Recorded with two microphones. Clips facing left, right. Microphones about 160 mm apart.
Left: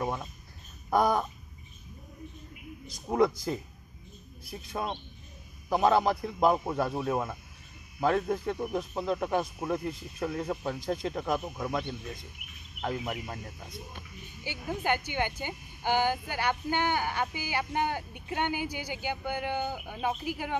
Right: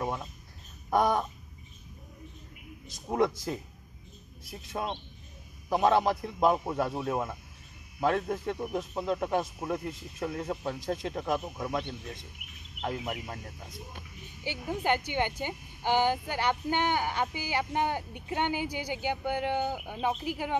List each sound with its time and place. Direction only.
0.0 s a sound: 5° left (ahead or behind)
3.1 s speech: centre (ahead or behind)
4.6 s speech: centre (ahead or behind)
12.8 s speech: 5° right (ahead or behind)
14.4 s a woman's voice: 25° right (ahead or behind)